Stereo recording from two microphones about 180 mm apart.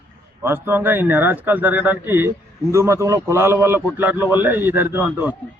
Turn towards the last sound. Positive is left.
turn(degrees=-10)  # may be behind; listen again after turning